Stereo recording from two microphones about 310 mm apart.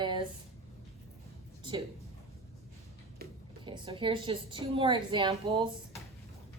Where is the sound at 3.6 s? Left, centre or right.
Centre.